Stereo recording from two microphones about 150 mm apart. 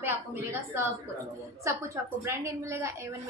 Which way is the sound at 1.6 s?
20° right (ahead or behind).